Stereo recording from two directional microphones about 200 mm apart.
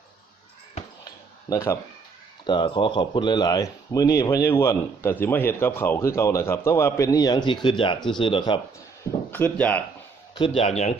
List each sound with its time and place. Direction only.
1.5 s speech: 15° left (ahead or behind)
9.3 s speech: 10° left (ahead or behind)
10.3 s speech: 25° left (ahead or behind)